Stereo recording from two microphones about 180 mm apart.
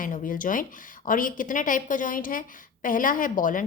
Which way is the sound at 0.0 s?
50° left (ahead or behind).